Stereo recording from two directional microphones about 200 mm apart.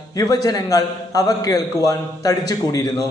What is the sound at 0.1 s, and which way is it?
Speech, 20° left (ahead or behind).